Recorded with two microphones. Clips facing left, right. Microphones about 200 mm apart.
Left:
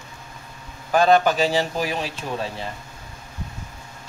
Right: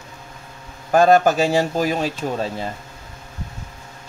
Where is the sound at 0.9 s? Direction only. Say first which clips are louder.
Right 3 dB; 45° right (ahead or behind).